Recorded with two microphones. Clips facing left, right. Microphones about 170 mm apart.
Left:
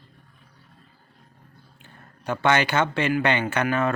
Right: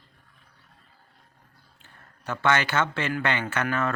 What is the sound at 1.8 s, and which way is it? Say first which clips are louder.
Speech: left 4 dB; 15° left (ahead or behind).